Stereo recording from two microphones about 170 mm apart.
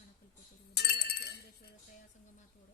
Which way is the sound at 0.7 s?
70° left (ahead or behind).